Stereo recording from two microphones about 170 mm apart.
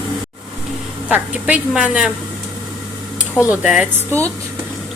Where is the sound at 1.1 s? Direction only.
5° right (ahead or behind).